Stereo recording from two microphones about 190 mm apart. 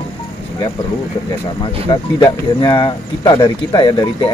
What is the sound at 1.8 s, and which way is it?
Speech, 25° left (ahead or behind).